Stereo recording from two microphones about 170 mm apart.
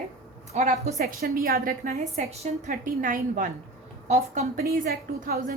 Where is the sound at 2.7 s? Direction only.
55° right (ahead or behind).